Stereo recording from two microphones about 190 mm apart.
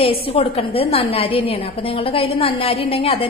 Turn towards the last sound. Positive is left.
turn(degrees=30)  # may be behind; listen again after turning